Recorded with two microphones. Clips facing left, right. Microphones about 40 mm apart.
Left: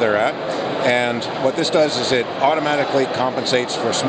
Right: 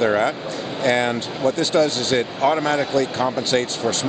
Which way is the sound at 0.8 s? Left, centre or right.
Left.